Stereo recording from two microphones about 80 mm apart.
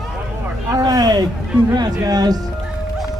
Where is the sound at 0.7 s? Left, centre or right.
Right.